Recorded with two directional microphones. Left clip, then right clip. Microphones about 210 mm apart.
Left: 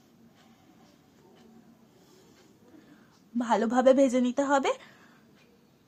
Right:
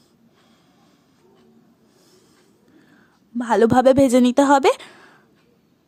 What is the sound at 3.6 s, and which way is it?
Speech, 45° right (ahead or behind).